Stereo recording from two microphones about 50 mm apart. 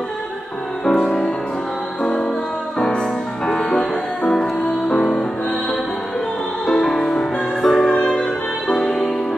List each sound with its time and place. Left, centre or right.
0.8 s music: centre
2.8 s music: centre
4.9 s music: centre
6.6 s music: centre